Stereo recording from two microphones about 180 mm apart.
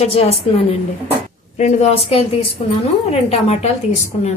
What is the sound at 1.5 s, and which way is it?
A woman's voice, 35° left (ahead or behind).